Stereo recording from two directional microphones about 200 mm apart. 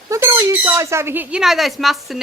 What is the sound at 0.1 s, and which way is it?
Speech, 15° right (ahead or behind).